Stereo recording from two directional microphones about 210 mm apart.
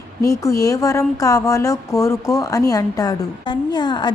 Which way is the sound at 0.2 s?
15° left (ahead or behind).